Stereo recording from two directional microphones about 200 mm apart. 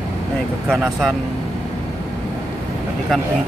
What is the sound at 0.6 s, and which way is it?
Speech, centre (ahead or behind).